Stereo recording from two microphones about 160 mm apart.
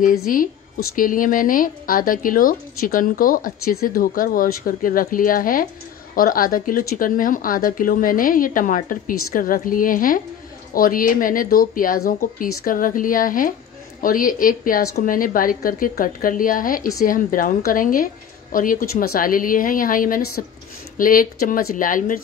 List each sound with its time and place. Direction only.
0.3 s a woman's voice: 60° left (ahead or behind)